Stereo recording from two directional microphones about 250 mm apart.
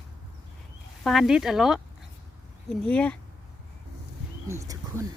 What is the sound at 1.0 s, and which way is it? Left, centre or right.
Speech, centre.